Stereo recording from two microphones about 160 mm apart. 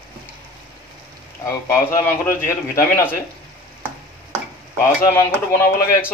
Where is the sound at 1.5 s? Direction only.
15° left (ahead or behind).